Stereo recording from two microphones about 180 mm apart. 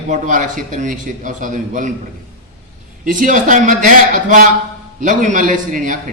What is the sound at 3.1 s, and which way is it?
A man's voice, 50° right (ahead or behind).